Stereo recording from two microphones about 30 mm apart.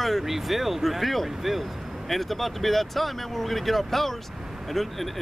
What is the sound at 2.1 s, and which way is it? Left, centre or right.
Speech, centre.